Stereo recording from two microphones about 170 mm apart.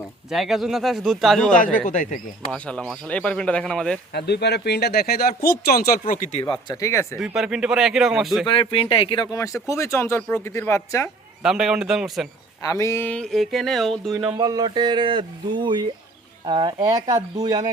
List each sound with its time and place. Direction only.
0.3 s speech: centre (ahead or behind)
1.5 s speech: 50° left (ahead or behind)
2.5 s speech: 5° left (ahead or behind)
4.1 s speech: 75° left (ahead or behind); by 6.4 s 45° left (ahead or behind)
6.4 s speech: 25° left (ahead or behind)
7.2 s speech: 5° right (ahead or behind)
8.4 s speech: 30° left (ahead or behind); by 11.1 s 15° left (ahead or behind)
11.4 s speech: 5° right (ahead or behind)
12.6 s speech: 20° left (ahead or behind); by 14.3 s centre (ahead or behind)
14.3 s speech: 25° right (ahead or behind)